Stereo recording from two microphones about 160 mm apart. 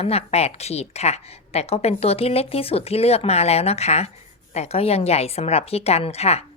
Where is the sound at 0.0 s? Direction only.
40° left (ahead or behind).